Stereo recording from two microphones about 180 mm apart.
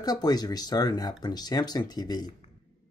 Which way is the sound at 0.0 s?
20° left (ahead or behind).